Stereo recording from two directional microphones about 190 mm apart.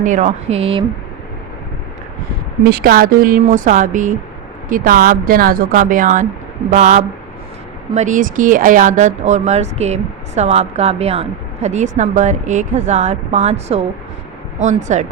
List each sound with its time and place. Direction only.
0.0 s speech: 40° right (ahead or behind)
2.6 s speech: 55° right (ahead or behind)